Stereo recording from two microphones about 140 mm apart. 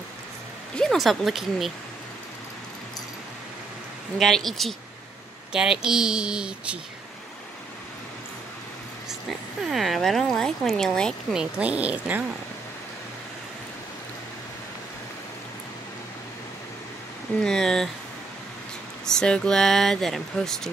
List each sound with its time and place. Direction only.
0.7 s speech: centre (ahead or behind)
4.2 s speech: centre (ahead or behind)
9.6 s speech: centre (ahead or behind)
11.3 s speech: 10° right (ahead or behind)
17.4 s speech: 5° left (ahead or behind)
19.0 s speech: 5° left (ahead or behind)